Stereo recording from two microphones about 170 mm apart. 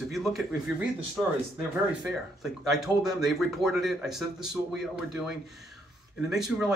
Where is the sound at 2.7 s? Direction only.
Centre (ahead or behind).